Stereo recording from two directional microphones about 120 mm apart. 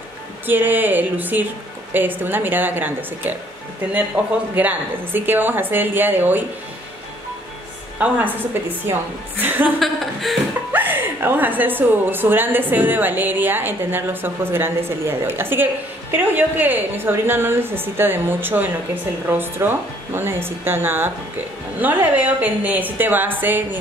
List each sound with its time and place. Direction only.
0.5 s a woman's voice: 15° right (ahead or behind)
8.0 s a woman's voice: 15° right (ahead or behind)
9.8 s speech: centre (ahead or behind)
10.7 s a woman's voice: 15° right (ahead or behind)